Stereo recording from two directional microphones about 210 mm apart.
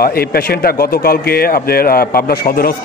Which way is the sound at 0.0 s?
45° left (ahead or behind).